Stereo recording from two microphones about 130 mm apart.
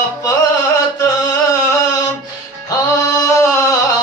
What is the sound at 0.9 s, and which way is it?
Music, 30° left (ahead or behind).